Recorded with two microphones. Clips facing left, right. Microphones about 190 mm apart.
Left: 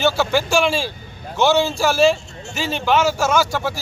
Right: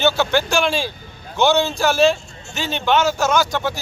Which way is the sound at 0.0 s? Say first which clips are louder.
Even; 5° left (ahead or behind).